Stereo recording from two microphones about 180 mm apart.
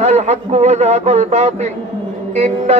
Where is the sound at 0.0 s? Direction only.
40° right (ahead or behind).